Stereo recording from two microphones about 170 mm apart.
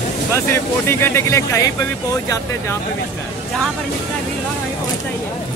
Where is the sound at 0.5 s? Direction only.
15° left (ahead or behind).